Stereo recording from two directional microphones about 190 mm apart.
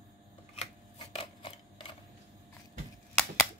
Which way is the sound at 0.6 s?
30° left (ahead or behind).